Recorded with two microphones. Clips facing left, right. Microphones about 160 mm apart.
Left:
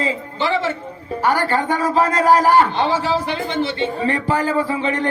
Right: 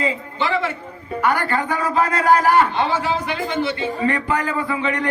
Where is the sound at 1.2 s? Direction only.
30° left (ahead or behind).